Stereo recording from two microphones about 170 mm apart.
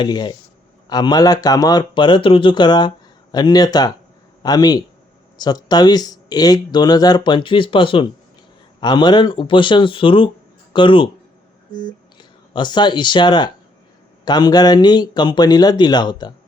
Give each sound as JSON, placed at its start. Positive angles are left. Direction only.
{"t": 0.0, "sound": "speech", "side_deg": 25}
{"t": 11.7, "sound": "speech", "side_deg": 50}
{"t": 12.1, "sound": "speech", "side_deg": 25}